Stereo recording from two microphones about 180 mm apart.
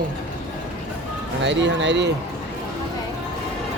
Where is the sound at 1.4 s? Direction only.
85° right.